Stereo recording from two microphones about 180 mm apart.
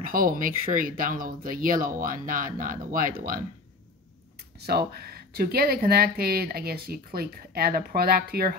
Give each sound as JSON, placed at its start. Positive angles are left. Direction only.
{"t": 0.0, "sound": "speech", "side_deg": -50}
{"t": 4.6, "sound": "speech", "side_deg": -60}